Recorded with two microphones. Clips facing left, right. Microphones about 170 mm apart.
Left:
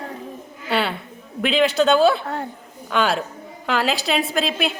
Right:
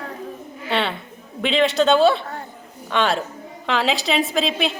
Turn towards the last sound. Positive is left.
turn(degrees=0)  # may be behind; listen again after turning